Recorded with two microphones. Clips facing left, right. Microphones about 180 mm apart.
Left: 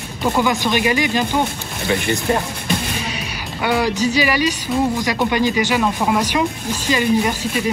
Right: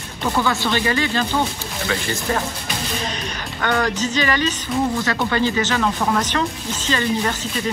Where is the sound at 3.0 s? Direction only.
10° left (ahead or behind).